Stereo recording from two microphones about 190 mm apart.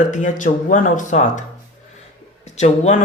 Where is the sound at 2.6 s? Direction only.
40° left (ahead or behind).